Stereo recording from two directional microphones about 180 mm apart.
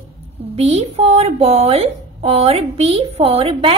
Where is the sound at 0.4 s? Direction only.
35° right (ahead or behind).